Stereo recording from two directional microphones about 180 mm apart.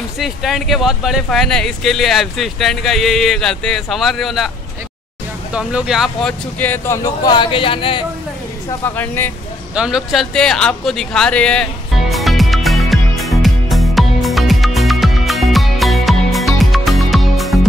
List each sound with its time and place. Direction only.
0.2 s speech: centre (ahead or behind)
5.5 s speech: 5° right (ahead or behind)
6.6 s speech: 10° left (ahead or behind); by 8.0 s 30° left (ahead or behind)
8.8 s speech: 10° left (ahead or behind)
9.8 s speech: 5° right (ahead or behind)
12.1 s music: centre (ahead or behind)